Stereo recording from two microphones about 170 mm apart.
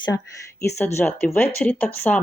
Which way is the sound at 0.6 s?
15° left (ahead or behind).